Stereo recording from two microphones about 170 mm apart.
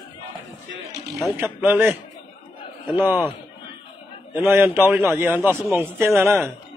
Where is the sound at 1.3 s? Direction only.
10° right (ahead or behind).